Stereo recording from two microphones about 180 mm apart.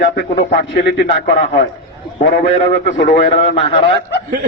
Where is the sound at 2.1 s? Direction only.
35° left (ahead or behind).